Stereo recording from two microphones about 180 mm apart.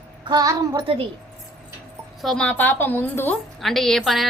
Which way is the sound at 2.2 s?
5° left (ahead or behind).